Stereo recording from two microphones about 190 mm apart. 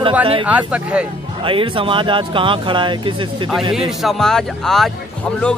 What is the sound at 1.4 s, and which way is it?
Speech, 25° right (ahead or behind).